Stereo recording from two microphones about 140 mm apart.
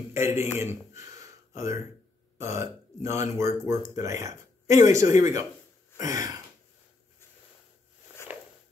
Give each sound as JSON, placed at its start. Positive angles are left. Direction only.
{"t": 0.1, "sound": "a man's voice", "side_deg": -20}